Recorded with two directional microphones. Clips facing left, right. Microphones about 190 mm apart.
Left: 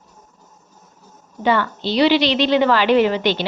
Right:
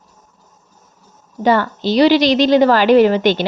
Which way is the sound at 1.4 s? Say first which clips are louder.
Right 4 dB; 40° right (ahead or behind).